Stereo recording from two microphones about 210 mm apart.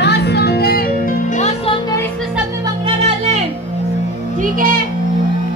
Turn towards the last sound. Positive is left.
turn(degrees=-40)  # may be behind; listen again after turning